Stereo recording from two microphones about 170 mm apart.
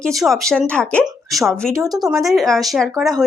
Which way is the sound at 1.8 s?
20° right (ahead or behind).